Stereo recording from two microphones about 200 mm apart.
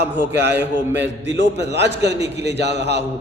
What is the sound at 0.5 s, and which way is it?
Speech, 10° right (ahead or behind).